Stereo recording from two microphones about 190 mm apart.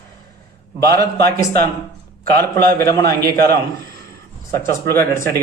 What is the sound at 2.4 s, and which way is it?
Speech, 10° left (ahead or behind).